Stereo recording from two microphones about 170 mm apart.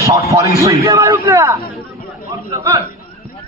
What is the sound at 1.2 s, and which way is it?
Speech, 15° right (ahead or behind).